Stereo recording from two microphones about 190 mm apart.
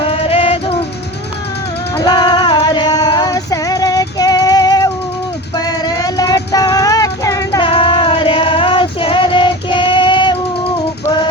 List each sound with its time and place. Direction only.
0.0 s music: 30° left (ahead or behind)
2.0 s female singing: 20° left (ahead or behind)
5.5 s child singing: 20° left (ahead or behind)